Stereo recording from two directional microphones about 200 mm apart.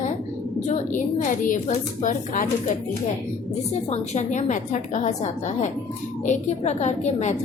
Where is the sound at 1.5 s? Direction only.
35° left (ahead or behind).